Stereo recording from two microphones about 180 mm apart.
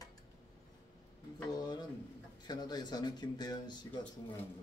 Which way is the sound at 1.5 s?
20° left (ahead or behind).